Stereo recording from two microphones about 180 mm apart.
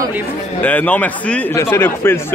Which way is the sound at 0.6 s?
10° left (ahead or behind).